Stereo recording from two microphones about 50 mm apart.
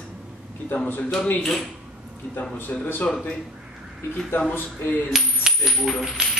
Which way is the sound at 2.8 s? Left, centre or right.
Left.